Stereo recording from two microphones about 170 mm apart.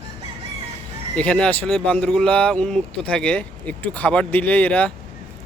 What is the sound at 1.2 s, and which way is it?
Speech, 5° left (ahead or behind).